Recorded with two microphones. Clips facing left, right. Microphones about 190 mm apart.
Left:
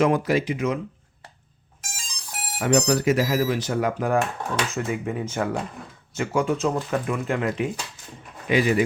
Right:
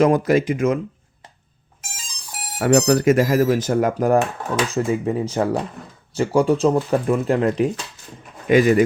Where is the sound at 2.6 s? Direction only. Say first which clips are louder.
Right 5 dB; 55° right (ahead or behind).